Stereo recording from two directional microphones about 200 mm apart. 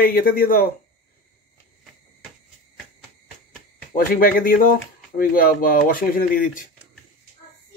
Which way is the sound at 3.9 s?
45° left (ahead or behind).